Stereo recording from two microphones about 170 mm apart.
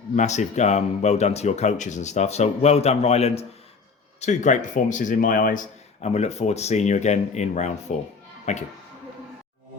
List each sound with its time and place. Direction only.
0.2 s speech: 45° left (ahead or behind)